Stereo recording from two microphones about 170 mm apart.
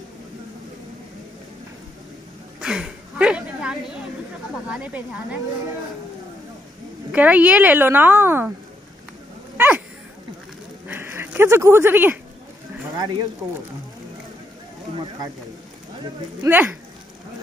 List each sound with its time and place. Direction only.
2.6 s a sound: 5° right (ahead or behind)
4.6 s a woman's voice: 5° right (ahead or behind)
7.1 s a woman's voice: 10° right (ahead or behind)
9.6 s dog: 10° right (ahead or behind)
10.9 s a sound: 15° right (ahead or behind)
12.9 s speech: 25° right (ahead or behind)
16.4 s a woman's voice: 10° right (ahead or behind)